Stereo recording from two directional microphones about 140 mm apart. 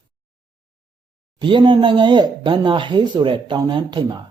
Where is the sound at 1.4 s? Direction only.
35° right (ahead or behind).